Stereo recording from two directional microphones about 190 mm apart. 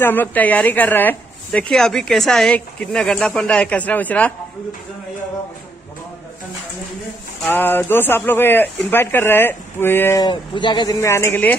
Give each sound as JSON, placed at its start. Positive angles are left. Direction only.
{"t": 0.0, "sound": "speech", "side_deg": 10}
{"t": 7.4, "sound": "speech", "side_deg": 10}
{"t": 10.2, "sound": "speech", "side_deg": 25}